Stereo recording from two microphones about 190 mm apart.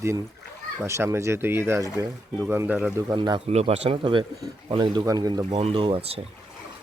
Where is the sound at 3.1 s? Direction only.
25° right (ahead or behind).